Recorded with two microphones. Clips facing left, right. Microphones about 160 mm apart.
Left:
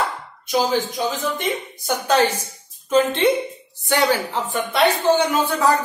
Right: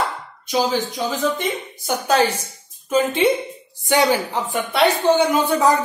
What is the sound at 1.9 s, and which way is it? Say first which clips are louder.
Speech: even; 10° right (ahead or behind).